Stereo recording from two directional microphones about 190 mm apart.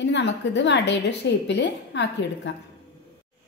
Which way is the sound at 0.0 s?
65° left (ahead or behind).